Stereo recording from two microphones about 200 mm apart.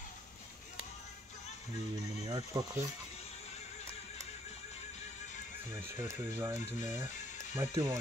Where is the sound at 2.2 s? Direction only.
20° right (ahead or behind).